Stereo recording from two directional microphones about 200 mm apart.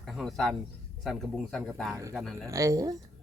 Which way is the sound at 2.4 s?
15° right (ahead or behind).